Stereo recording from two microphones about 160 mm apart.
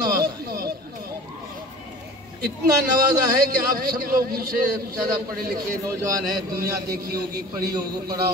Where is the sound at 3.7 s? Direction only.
60° right (ahead or behind).